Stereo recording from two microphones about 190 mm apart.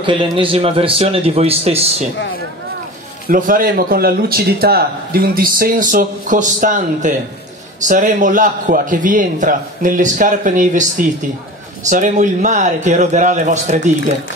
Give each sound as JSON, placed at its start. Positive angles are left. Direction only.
{"t": 0.0, "sound": "a man's voice", "side_deg": -25}
{"t": 3.3, "sound": "a man's voice", "side_deg": -45}